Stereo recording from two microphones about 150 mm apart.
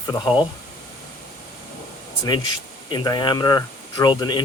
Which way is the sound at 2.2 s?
30° left (ahead or behind).